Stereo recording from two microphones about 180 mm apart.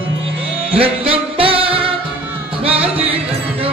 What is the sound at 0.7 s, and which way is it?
Music, 30° right (ahead or behind).